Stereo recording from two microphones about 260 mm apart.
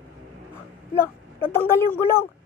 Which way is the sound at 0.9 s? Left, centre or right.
Centre.